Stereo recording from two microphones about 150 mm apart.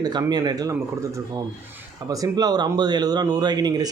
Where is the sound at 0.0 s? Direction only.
25° right (ahead or behind).